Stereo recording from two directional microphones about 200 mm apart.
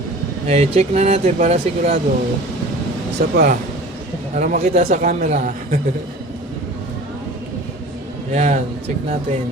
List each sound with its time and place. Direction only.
0.4 s speech: 30° right (ahead or behind)
3.2 s speech: 50° right (ahead or behind)
4.4 s speech: 35° right (ahead or behind)
8.3 s speech: 35° right (ahead or behind)